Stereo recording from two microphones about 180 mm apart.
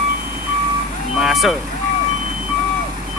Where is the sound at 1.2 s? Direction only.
Centre (ahead or behind).